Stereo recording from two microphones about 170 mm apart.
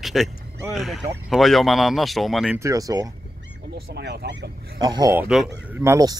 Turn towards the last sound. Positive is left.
turn(degrees=-20)  # may be behind; listen again after turning